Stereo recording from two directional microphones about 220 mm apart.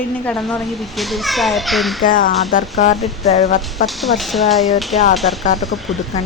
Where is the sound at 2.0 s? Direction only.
40° left (ahead or behind).